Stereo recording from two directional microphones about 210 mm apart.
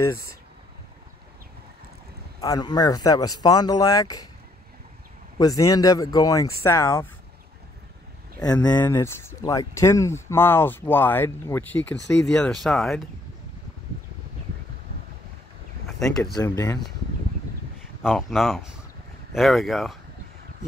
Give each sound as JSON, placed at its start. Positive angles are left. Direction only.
{"t": 2.4, "sound": "speech", "side_deg": 15}
{"t": 5.4, "sound": "speech", "side_deg": 15}
{"t": 8.4, "sound": "speech", "side_deg": 20}
{"t": 16.0, "sound": "speech", "side_deg": 0}
{"t": 16.3, "sound": "speech", "side_deg": 15}
{"t": 18.0, "sound": "speech", "side_deg": 0}